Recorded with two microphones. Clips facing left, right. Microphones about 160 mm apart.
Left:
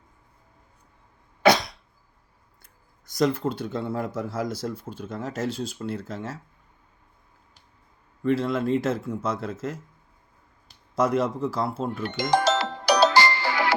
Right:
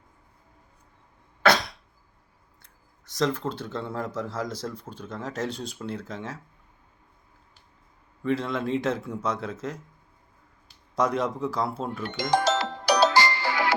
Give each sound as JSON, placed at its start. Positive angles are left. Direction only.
{"t": 3.1, "sound": "speech", "side_deg": 10}
{"t": 8.2, "sound": "speech", "side_deg": 0}
{"t": 10.9, "sound": "speech", "side_deg": 5}
{"t": 12.3, "sound": "music", "side_deg": 85}